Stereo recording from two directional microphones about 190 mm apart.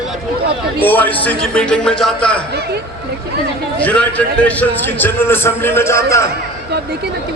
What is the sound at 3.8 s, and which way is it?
A man's voice, 5° left (ahead or behind).